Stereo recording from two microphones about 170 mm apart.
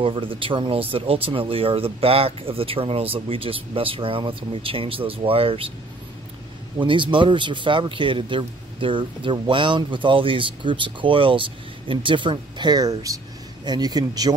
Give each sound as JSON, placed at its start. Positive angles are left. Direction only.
{"t": 0.0, "sound": "speech", "side_deg": -30}
{"t": 6.8, "sound": "a man's voice", "side_deg": -30}